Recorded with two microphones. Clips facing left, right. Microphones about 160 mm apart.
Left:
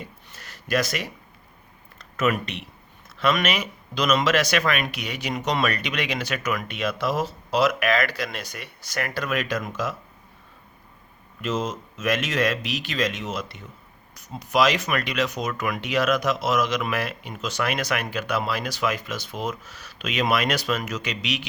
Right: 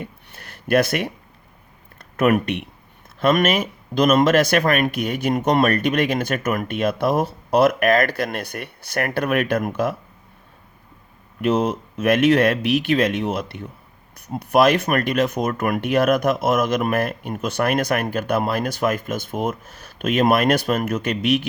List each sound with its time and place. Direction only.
0.0 s a sound: 55° right (ahead or behind)
2.0 s speech: 60° right (ahead or behind)
11.3 s speech: 60° right (ahead or behind)